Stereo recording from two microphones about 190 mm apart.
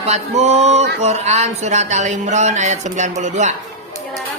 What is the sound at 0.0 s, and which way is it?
Speech, 35° right (ahead or behind).